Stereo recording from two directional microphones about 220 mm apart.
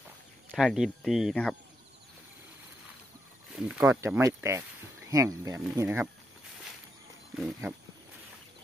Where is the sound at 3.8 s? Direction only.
10° right (ahead or behind).